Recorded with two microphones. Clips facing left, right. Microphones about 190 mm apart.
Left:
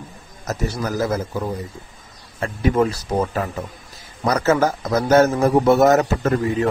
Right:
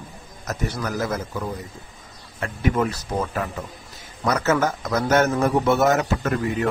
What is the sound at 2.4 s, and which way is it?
A man's voice, 30° left (ahead or behind).